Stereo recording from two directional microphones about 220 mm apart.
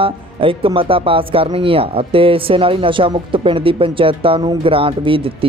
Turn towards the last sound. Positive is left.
turn(degrees=-25)  # may be behind; listen again after turning